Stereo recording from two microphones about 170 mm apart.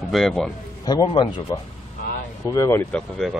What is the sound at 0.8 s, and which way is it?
A man's voice, 25° left (ahead or behind).